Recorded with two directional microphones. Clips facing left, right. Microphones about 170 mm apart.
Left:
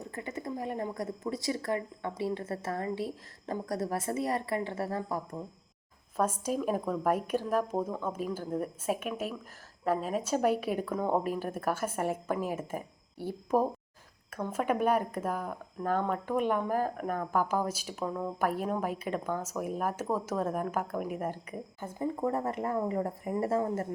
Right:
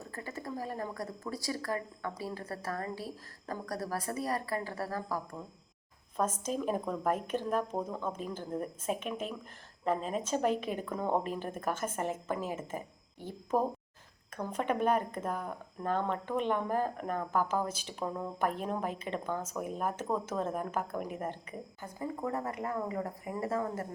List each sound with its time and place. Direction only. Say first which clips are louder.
0.0 s a woman's voice: left 3 dB; 20° left (ahead or behind)
6.1 s speech: left 3 dB; 10° left (ahead or behind)
22.3 s a woman's voice: left 4 dB; 25° left (ahead or behind)